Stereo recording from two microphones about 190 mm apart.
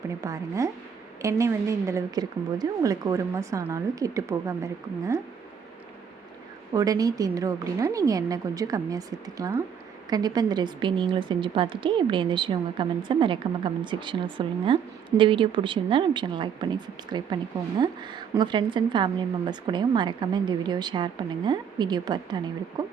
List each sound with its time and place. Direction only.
0.2 s a woman's voice: 15° right (ahead or behind)
6.7 s a woman's voice: 20° right (ahead or behind)